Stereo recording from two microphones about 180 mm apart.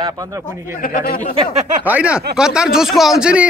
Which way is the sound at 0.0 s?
20° right (ahead or behind).